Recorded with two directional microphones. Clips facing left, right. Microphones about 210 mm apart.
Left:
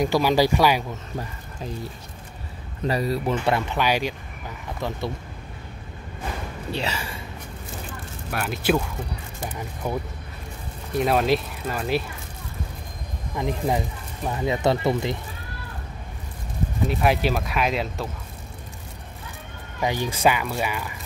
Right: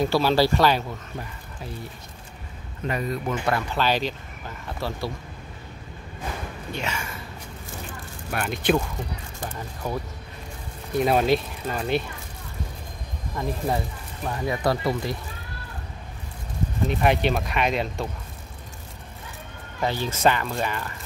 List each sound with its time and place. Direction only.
0.0 s speech: 15° left (ahead or behind)
2.9 s speech: 35° left (ahead or behind)
3.7 s speech: 10° left (ahead or behind)
6.7 s speech: 35° left (ahead or behind)
8.3 s speech: 5° left (ahead or behind)
9.5 s speech: 15° left (ahead or behind)
11.0 s speech: centre (ahead or behind)
13.4 s speech: 15° left (ahead or behind)
16.8 s speech: 5° left (ahead or behind)
19.8 s speech: 15° left (ahead or behind)